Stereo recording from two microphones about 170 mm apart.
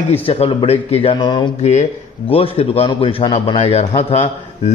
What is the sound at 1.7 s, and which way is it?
A man's voice, 40° left (ahead or behind).